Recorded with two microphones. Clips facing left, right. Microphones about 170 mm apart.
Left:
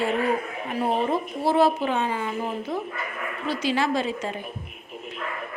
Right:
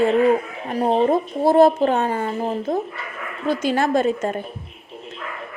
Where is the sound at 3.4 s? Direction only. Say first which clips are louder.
Right 5 dB; 50° right (ahead or behind).